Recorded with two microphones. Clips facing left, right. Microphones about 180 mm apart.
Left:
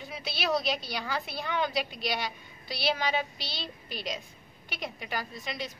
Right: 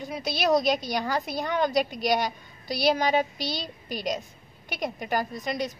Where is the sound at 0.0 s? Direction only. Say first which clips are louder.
Right 7 dB; 40° right (ahead or behind).